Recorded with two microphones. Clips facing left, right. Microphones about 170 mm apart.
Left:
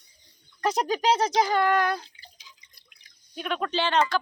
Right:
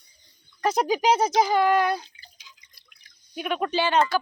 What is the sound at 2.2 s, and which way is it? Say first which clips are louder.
Drip: left 1 dB; 25° left (ahead or behind).